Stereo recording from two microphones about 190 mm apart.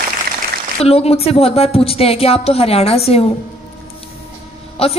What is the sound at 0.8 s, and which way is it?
Speech, 30° left (ahead or behind).